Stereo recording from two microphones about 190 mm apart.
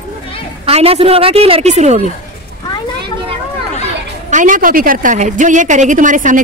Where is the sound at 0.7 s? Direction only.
30° right (ahead or behind).